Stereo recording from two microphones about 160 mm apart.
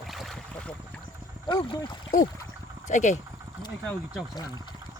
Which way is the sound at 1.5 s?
30° left (ahead or behind).